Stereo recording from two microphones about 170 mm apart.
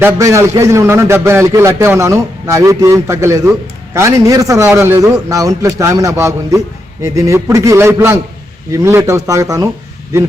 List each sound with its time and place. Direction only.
0.0 s a man's voice: 20° right (ahead or behind)